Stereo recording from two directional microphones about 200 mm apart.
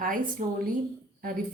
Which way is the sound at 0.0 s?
45° right (ahead or behind).